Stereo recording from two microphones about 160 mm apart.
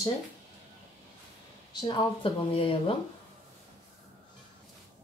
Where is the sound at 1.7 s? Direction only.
30° left (ahead or behind).